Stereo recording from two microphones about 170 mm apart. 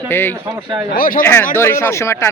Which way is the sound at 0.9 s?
55° left (ahead or behind).